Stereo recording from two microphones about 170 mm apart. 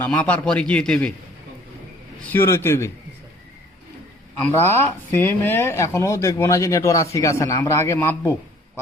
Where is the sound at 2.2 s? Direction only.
10° left (ahead or behind).